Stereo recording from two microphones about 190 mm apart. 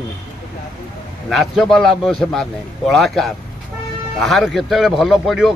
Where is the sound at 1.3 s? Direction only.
Centre (ahead or behind).